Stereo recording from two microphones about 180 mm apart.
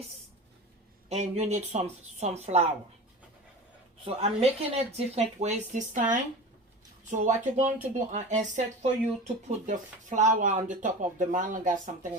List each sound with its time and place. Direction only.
1.1 s speech: 40° right (ahead or behind)
4.0 s speech: 35° right (ahead or behind)
7.1 s speech: 45° right (ahead or behind)